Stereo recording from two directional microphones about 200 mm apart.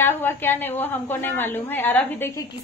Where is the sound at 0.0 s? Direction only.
10° left (ahead or behind).